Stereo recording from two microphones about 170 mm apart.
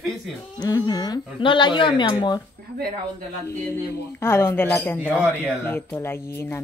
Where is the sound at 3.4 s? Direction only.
15° left (ahead or behind).